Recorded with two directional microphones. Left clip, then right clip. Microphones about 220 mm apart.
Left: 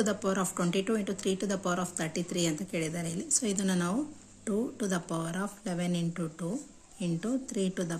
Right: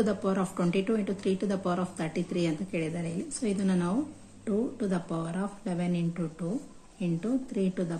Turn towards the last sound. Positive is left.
turn(degrees=30)  # may be behind; listen again after turning